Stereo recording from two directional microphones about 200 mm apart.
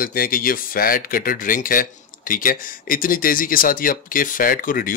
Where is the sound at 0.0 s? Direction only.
45° left (ahead or behind).